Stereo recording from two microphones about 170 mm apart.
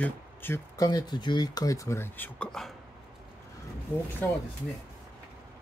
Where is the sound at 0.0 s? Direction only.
15° left (ahead or behind).